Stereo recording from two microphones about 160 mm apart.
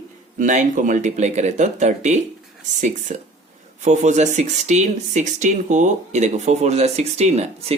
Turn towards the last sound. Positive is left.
turn(degrees=-40)  # may be behind; listen again after turning